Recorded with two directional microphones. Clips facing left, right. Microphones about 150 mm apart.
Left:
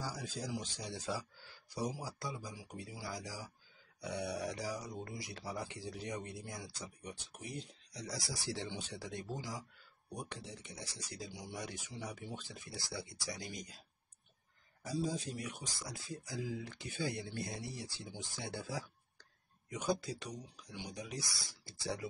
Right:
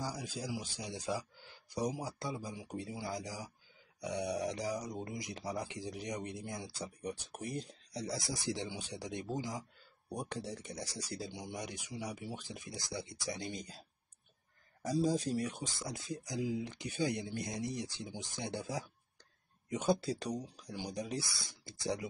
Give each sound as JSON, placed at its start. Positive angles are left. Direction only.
{"t": 0.0, "sound": "speech", "side_deg": -15}
{"t": 4.7, "sound": "speech", "side_deg": -40}
{"t": 5.0, "sound": "speech", "side_deg": -20}
{"t": 7.9, "sound": "speech", "side_deg": -30}
{"t": 10.0, "sound": "speech", "side_deg": -35}
{"t": 14.8, "sound": "speech", "side_deg": -40}